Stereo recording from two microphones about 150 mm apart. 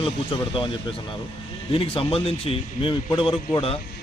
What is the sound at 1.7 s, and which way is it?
A man's voice, 35° left (ahead or behind).